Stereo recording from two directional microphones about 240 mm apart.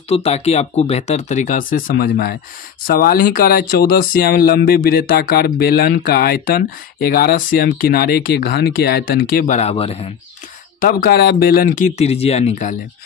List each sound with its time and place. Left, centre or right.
0.1 s speech: left
10.8 s speech: left